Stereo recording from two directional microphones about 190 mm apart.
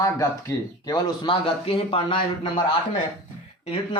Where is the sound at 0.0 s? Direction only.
15° left (ahead or behind).